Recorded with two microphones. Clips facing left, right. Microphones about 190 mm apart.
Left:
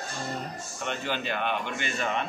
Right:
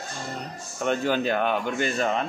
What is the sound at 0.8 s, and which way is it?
Speech, 45° right (ahead or behind).